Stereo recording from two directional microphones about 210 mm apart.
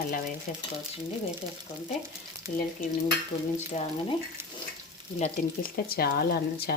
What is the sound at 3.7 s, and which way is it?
Frying, 35° left (ahead or behind).